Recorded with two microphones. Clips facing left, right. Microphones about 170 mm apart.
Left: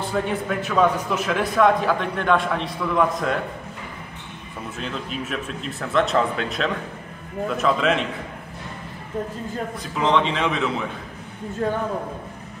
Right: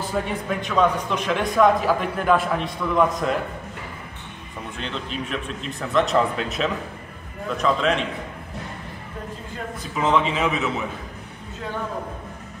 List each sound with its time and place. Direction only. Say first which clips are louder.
0.0 s a man's voice: left 2 dB; centre (ahead or behind)
4.7 s a man's voice: even; 5° left (ahead or behind)
9.9 s a man's voice: even; 5° right (ahead or behind)